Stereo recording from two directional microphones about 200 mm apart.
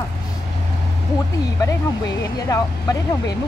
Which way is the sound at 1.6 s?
15° left (ahead or behind).